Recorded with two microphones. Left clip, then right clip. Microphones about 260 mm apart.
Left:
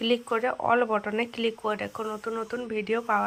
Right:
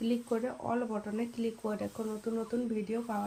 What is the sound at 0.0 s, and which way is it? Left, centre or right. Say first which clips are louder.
Speech: left 8 dB; left.